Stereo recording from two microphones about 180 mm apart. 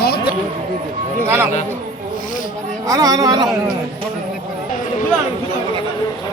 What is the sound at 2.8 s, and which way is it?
Speech, 20° right (ahead or behind).